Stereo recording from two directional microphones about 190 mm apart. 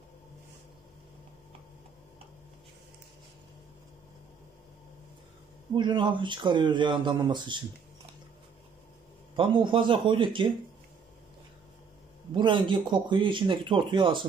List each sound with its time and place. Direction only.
5.8 s speech: 25° right (ahead or behind)
9.3 s speech: 25° right (ahead or behind)
12.4 s speech: 25° right (ahead or behind)